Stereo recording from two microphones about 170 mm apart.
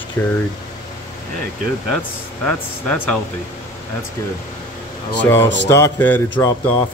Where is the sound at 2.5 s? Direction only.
5° left (ahead or behind).